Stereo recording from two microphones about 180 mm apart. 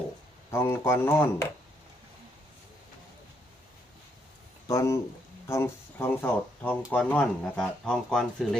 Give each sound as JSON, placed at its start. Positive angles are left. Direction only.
{"t": 0.5, "sound": "speech", "side_deg": 15}
{"t": 4.7, "sound": "speech", "side_deg": 15}